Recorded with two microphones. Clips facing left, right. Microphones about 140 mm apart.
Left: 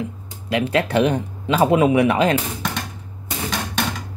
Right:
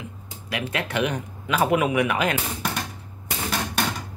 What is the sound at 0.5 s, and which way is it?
Speech, 30° left (ahead or behind).